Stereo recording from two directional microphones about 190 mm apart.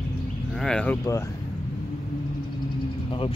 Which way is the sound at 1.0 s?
15° left (ahead or behind).